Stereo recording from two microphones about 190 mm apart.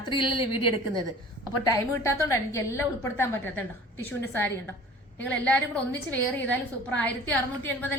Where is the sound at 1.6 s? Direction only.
15° left (ahead or behind).